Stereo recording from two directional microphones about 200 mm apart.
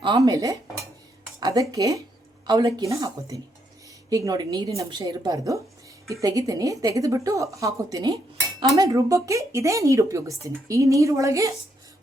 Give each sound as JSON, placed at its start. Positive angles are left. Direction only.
{"t": 0.0, "sound": "dishes", "side_deg": -20}
{"t": 1.4, "sound": "a woman's voice", "side_deg": -20}